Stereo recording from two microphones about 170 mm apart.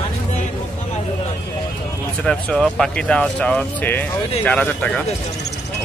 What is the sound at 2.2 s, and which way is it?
Speech, 5° left (ahead or behind).